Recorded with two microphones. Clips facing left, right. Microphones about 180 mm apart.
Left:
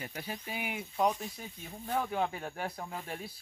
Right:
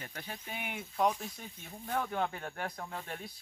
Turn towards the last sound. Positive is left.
turn(degrees=10)  # may be behind; listen again after turning